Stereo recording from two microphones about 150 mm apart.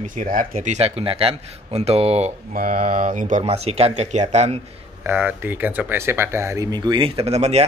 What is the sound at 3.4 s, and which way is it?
Speech, 40° right (ahead or behind).